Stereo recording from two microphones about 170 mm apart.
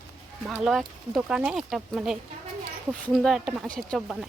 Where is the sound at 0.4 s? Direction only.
Centre (ahead or behind).